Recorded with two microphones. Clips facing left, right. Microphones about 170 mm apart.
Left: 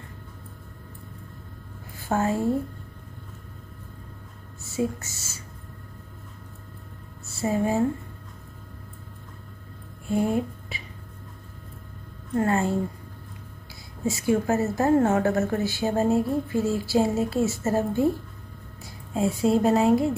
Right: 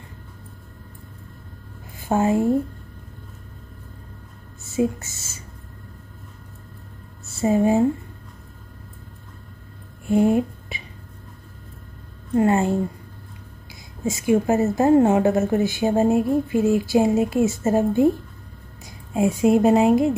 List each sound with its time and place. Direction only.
2.0 s a woman's voice: 15° right (ahead or behind)
4.8 s a woman's voice: 20° right (ahead or behind)
7.4 s speech: 20° right (ahead or behind)
10.0 s a sound: 20° right (ahead or behind)
12.4 s speech: 20° right (ahead or behind)
14.0 s a woman's voice: 20° right (ahead or behind)